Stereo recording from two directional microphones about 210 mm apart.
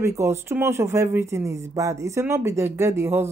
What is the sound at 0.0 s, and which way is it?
Speech, 15° right (ahead or behind).